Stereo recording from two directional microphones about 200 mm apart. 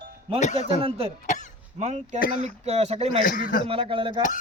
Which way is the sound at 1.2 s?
35° left (ahead or behind).